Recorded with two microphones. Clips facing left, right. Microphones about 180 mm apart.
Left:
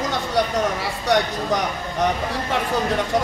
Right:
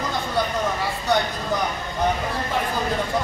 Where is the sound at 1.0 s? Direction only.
85° left.